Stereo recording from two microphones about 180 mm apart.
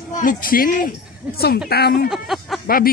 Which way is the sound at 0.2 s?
50° left (ahead or behind).